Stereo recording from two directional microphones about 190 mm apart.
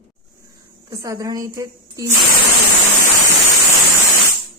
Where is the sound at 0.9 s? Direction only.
20° right (ahead or behind).